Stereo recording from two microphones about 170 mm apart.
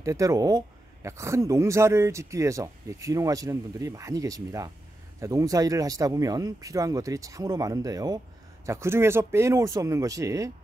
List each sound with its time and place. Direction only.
0.0 s speech: 20° right (ahead or behind)